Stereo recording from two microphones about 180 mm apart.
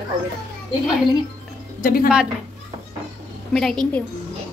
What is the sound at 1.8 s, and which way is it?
Speech, 55° left (ahead or behind).